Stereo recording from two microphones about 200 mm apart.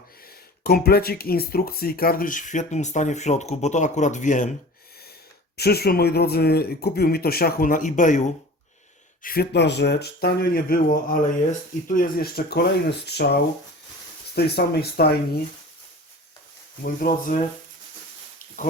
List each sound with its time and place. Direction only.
0.3 s speech: 50° left (ahead or behind)
5.5 s speech: 55° left (ahead or behind)
9.2 s speech: 50° left (ahead or behind)
16.8 s speech: 45° left (ahead or behind)